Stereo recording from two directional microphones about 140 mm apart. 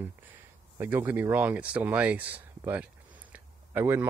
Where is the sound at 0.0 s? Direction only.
15° right (ahead or behind).